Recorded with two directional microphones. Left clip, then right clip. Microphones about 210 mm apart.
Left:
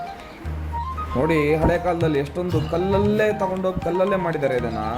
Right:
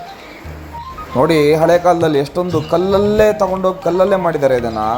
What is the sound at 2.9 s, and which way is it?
Speech, 15° right (ahead or behind).